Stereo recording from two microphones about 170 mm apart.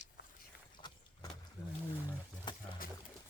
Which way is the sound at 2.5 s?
25° left (ahead or behind).